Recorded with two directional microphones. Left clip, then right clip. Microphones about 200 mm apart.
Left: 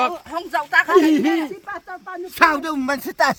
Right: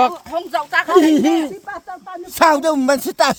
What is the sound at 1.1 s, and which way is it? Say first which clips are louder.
Speech: right 3 dB; 55° right (ahead or behind).